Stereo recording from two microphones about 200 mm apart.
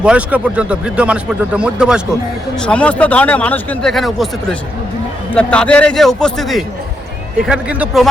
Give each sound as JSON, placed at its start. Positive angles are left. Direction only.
{"t": 0.0, "sound": "speech", "side_deg": -5}
{"t": 5.3, "sound": "speech", "side_deg": 5}